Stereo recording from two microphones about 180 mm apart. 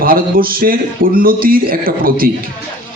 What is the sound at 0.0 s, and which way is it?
A man's voice, 55° right (ahead or behind).